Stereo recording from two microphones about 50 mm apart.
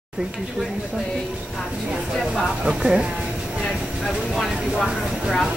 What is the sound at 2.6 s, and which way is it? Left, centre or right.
Speech, centre.